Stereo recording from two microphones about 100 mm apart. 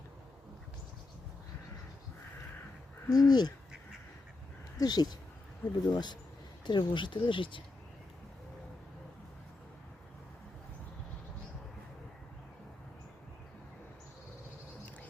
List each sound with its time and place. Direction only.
3.1 s speech: 40° left (ahead or behind)
4.8 s speech: 40° left (ahead or behind); by 7.6 s 55° left (ahead or behind)